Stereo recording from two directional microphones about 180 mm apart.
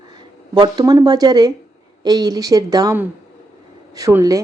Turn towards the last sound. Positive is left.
turn(degrees=-15)  # may be behind; listen again after turning